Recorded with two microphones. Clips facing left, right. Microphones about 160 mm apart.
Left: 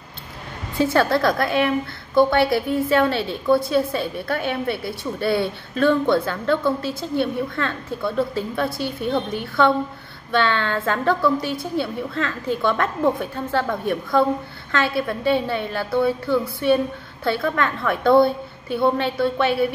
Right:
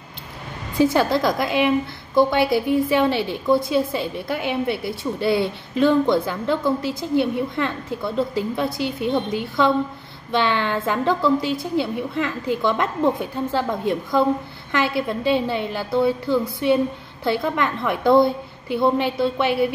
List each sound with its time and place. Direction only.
0.7 s a woman's voice: 20° right (ahead or behind)